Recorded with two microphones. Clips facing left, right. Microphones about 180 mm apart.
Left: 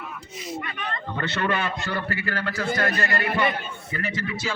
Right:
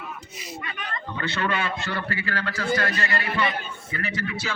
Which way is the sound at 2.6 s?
50° left (ahead or behind).